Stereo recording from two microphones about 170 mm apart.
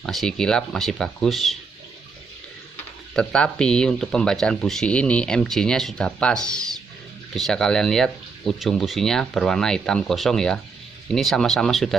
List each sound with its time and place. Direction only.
0.0 s speech: centre (ahead or behind)
3.2 s speech: 5° left (ahead or behind)